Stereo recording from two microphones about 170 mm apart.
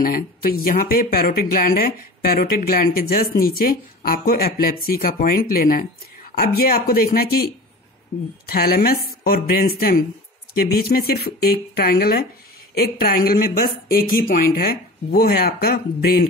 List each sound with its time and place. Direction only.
0.0 s speech: 60° left (ahead or behind)